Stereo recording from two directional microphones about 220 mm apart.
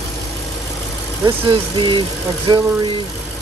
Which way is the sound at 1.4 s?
20° right (ahead or behind).